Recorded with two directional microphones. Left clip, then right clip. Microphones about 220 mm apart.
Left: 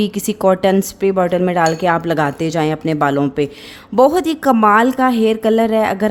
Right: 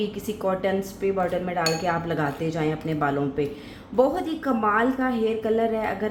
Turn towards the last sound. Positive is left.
turn(degrees=50)  # may be behind; listen again after turning